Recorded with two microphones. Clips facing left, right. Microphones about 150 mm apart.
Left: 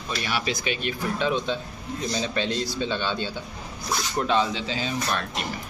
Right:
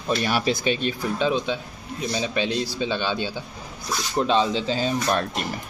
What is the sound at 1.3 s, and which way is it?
A man's voice, 10° right (ahead or behind).